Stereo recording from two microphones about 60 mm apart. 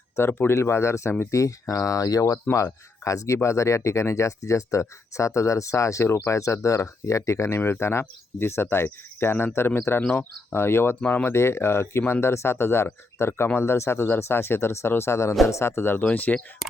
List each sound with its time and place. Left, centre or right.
0.2 s speech: left
0.5 s speech: left
6.1 s speech: left
6.3 s speech: left
7.6 s speech: left
16.0 s speech: left